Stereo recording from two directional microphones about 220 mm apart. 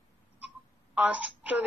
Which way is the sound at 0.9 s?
5° right (ahead or behind).